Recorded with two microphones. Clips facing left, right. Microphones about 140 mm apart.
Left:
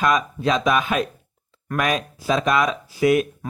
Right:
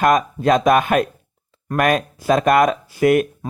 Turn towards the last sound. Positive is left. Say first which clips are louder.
# right 3 dB
turn(degrees=-50)  # may be behind; listen again after turning